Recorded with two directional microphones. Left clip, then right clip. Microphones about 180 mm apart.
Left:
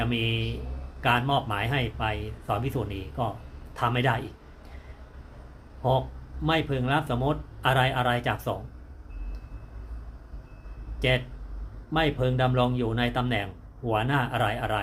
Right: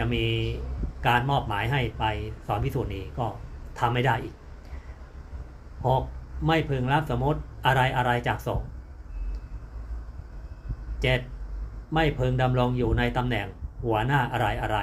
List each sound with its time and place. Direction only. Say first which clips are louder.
0.0 s speech: right 1 dB; 10° left (ahead or behind)
6.4 s speech: right 1 dB; 10° left (ahead or behind)
11.0 s speech: even; 10° left (ahead or behind)